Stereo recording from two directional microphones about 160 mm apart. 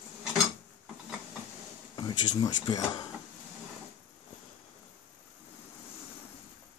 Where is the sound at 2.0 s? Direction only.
25° left (ahead or behind).